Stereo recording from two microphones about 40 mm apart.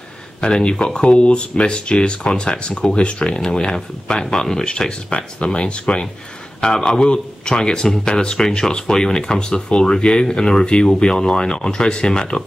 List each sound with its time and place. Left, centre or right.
0.4 s speech: left